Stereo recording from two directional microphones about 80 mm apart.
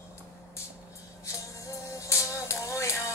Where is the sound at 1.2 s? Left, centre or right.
Left.